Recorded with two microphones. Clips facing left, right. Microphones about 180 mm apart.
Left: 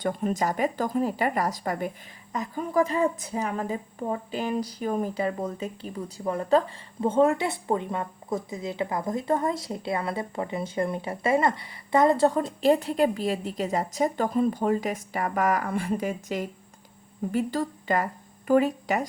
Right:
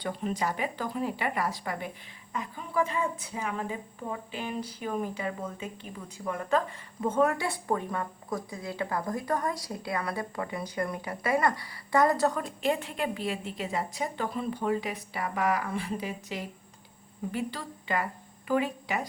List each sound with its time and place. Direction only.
0.0 s a woman's voice: 45° left (ahead or behind); by 12.5 s 25° left (ahead or behind)
12.5 s a woman's voice: 40° left (ahead or behind)